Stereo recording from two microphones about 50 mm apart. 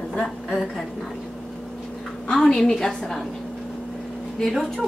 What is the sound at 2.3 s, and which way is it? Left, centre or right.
Speech, centre.